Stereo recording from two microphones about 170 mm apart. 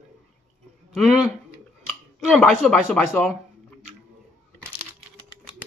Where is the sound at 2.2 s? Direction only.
Centre (ahead or behind).